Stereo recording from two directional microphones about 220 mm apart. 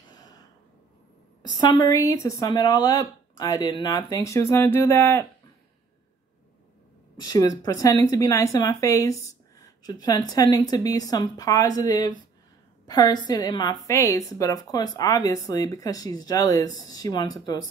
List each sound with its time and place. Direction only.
1.6 s speech: 15° left (ahead or behind)
7.2 s speech: 15° left (ahead or behind)